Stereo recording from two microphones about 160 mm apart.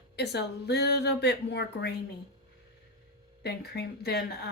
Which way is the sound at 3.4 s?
90° left.